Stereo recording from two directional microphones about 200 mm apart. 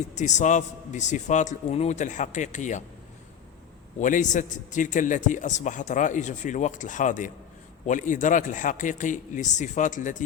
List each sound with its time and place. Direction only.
0.1 s a man's voice: 35° left (ahead or behind)
4.0 s a man's voice: 40° left (ahead or behind)